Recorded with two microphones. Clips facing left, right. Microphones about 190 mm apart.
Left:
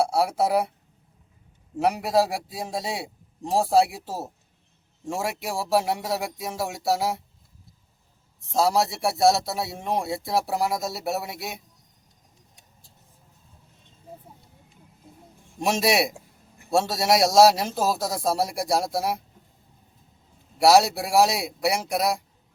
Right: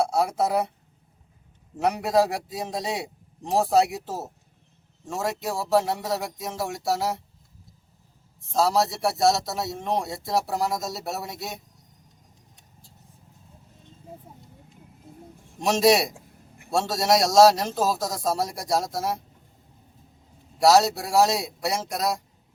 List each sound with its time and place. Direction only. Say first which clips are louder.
0.0 s speech: left 1 dB; 10° left (ahead or behind)
1.8 s a man's voice: even; 5° left (ahead or behind)
2.7 s a man's voice: even; 20° right (ahead or behind)
3.0 s a man's voice: left 1 dB; 10° left (ahead or behind)
8.5 s a man's voice: even; 10° left (ahead or behind)
15.6 s a man's voice: right 3 dB; 5° left (ahead or behind)
20.6 s a man's voice: left 1 dB; 10° left (ahead or behind)